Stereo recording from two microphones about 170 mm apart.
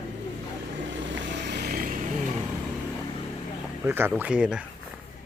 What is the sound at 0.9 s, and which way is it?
Vehicle, 90° right.